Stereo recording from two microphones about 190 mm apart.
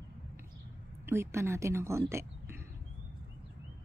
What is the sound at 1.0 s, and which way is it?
Speech, 15° right (ahead or behind).